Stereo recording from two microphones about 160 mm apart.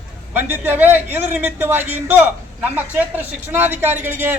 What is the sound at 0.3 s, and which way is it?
A man's voice, 10° right (ahead or behind).